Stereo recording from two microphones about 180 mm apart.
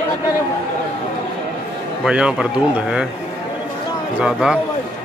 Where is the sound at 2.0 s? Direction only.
5° right (ahead or behind).